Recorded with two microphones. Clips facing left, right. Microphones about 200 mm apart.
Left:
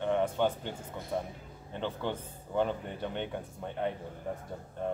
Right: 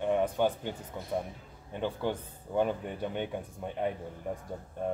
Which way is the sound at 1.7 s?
10° right (ahead or behind).